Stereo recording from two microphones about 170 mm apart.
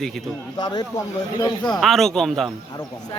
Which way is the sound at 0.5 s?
25° left (ahead or behind).